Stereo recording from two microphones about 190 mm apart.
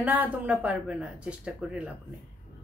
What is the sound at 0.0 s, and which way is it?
Speech, 10° right (ahead or behind).